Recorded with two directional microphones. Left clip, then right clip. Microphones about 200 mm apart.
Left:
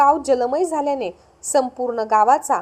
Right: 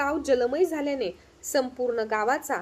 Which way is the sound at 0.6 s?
10° left (ahead or behind).